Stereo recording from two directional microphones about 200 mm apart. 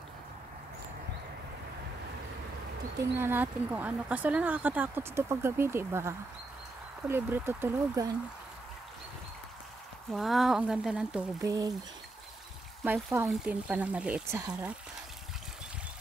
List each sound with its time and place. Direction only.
3.0 s speech: 10° right (ahead or behind)
10.1 s speech: centre (ahead or behind)
11.4 s speech: 15° right (ahead or behind)
12.8 s speech: 10° right (ahead or behind)